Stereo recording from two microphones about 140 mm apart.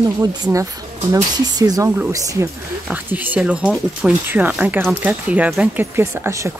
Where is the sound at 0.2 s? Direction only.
25° right (ahead or behind).